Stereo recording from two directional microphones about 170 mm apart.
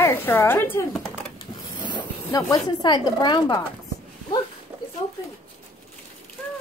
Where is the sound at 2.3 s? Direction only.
25° left (ahead or behind).